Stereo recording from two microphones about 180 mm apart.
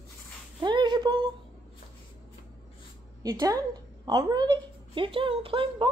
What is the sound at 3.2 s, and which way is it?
A woman's voice, 20° right (ahead or behind).